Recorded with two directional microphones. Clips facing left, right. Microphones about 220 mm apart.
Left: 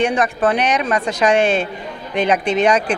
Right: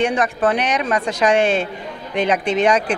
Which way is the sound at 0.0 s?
20° left (ahead or behind).